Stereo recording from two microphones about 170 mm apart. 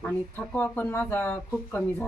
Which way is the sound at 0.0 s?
10° left (ahead or behind).